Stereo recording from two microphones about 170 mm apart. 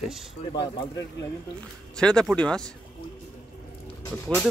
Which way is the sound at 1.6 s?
5° left (ahead or behind).